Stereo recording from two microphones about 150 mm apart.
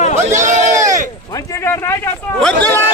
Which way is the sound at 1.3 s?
25° left (ahead or behind).